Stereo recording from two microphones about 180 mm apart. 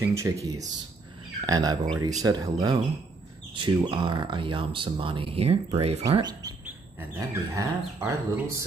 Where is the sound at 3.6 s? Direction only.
25° right (ahead or behind).